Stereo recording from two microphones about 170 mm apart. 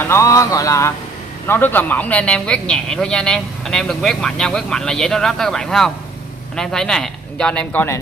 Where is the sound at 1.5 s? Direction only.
10° left (ahead or behind).